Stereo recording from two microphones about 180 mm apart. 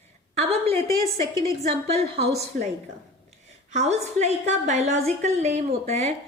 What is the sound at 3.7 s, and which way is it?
A woman's voice, 40° right (ahead or behind).